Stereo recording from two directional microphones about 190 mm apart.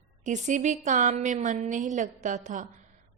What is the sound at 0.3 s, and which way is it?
A woman's voice, 40° right (ahead or behind).